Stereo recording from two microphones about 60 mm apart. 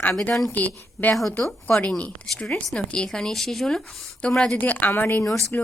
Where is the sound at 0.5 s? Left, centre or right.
Left.